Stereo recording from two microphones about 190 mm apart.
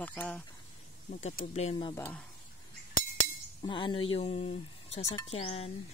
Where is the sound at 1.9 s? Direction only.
5° left (ahead or behind).